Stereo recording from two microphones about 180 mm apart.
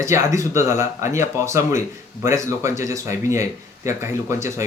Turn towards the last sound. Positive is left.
turn(degrees=-15)  # may be behind; listen again after turning